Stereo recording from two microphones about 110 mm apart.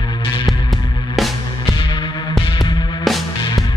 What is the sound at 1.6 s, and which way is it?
Music, 50° left (ahead or behind).